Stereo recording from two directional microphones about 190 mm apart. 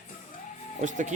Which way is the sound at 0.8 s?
40° right (ahead or behind).